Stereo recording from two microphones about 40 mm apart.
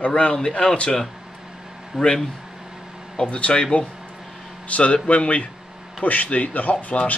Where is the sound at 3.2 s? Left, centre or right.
Left.